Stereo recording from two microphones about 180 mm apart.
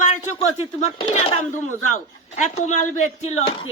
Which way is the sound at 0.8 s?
35° left (ahead or behind).